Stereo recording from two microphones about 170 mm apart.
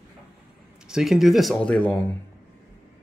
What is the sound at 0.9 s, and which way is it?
Speech, centre (ahead or behind).